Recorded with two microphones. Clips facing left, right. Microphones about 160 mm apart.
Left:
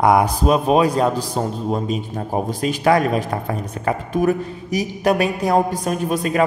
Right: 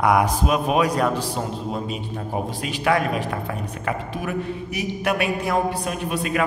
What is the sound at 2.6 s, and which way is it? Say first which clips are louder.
A man's voice: left 5 dB; 40° left (ahead or behind).